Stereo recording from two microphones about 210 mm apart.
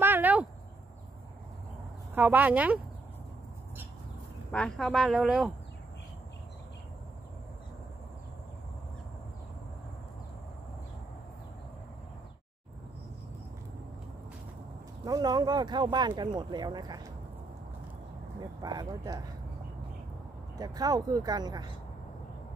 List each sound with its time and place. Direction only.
0.0 s a sound: 10° right (ahead or behind)
2.1 s speech: 10° right (ahead or behind)
4.5 s speech: 5° left (ahead or behind)
15.0 s speech: 20° right (ahead or behind)
18.6 s speech: 20° right (ahead or behind)
20.5 s speech: 20° right (ahead or behind)